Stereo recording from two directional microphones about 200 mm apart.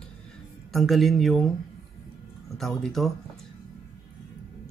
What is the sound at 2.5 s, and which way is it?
Speech, centre (ahead or behind).